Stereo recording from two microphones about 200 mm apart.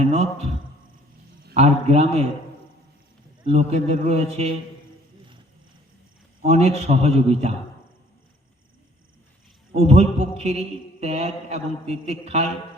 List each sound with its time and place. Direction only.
0.0 s speech: 30° right (ahead or behind)
1.5 s a man's voice: 30° right (ahead or behind)
3.4 s a man's voice: 30° right (ahead or behind)
6.4 s a man's voice: 30° right (ahead or behind)
9.7 s a man's voice: 30° right (ahead or behind)